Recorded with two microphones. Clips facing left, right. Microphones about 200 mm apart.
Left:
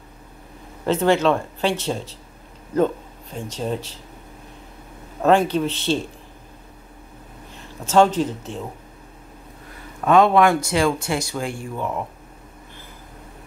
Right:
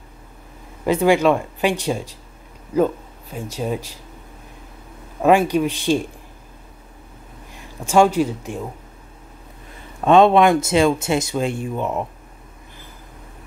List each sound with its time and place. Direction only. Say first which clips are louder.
0.8 s speech: right 2 dB; 10° right (ahead or behind)
5.2 s speech: right 2 dB; 10° right (ahead or behind)
7.5 s speech: right 1 dB; 10° right (ahead or behind)
10.0 s speech: right 2 dB; 25° right (ahead or behind)